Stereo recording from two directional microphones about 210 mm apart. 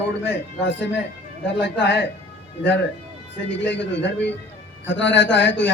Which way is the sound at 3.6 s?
55° left (ahead or behind).